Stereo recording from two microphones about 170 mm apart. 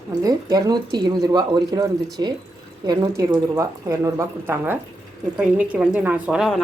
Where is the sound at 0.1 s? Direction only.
20° right (ahead or behind).